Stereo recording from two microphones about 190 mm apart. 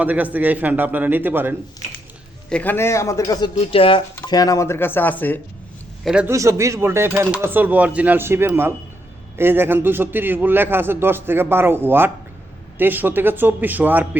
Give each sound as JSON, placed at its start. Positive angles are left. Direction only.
{"t": 0.0, "sound": "a man's voice", "side_deg": -10}
{"t": 2.5, "sound": "speech", "side_deg": 10}
{"t": 3.6, "sound": "speech", "side_deg": 30}
{"t": 6.1, "sound": "a man's voice", "side_deg": -5}
{"t": 6.3, "sound": "a man's voice", "side_deg": -15}